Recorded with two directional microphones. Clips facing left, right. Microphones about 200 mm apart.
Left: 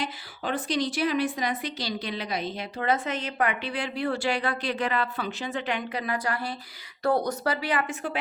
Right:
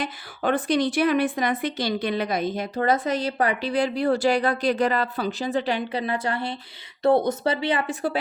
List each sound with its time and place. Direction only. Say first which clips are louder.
0.0 s a woman's voice: right 6 dB; 55° right (ahead or behind); by 8.2 s 35° right (ahead or behind)